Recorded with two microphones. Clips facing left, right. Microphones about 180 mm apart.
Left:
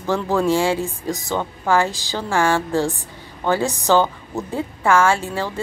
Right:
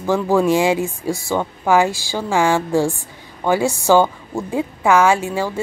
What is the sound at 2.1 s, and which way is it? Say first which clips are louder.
A woman's voice: right 2 dB; 15° right (ahead or behind).